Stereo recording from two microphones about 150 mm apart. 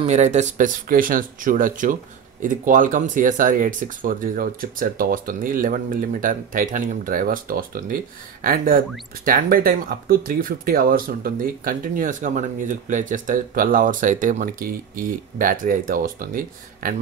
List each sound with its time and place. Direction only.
0.0 s speech: 50° right (ahead or behind); by 16.9 s 70° right (ahead or behind)